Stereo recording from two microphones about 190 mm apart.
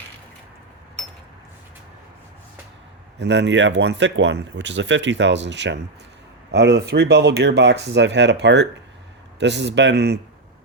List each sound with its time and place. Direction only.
3.2 s speech: 65° right (ahead or behind)